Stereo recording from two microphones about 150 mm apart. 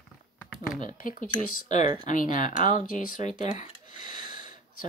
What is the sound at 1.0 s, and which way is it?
Speech, 65° left (ahead or behind).